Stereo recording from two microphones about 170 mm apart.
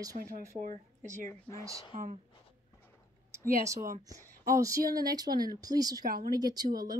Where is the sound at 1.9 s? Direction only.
45° right (ahead or behind).